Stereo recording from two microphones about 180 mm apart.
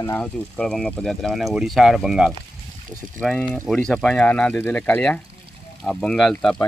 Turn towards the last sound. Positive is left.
turn(degrees=5)  # may be behind; listen again after turning